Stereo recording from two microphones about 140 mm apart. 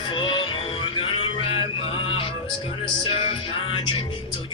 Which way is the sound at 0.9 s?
40° left (ahead or behind).